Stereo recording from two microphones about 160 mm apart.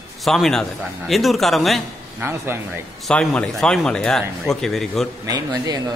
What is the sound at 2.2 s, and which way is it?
Speech, 15° right (ahead or behind).